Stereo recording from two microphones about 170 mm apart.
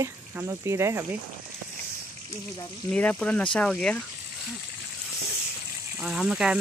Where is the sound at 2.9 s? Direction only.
5° left (ahead or behind).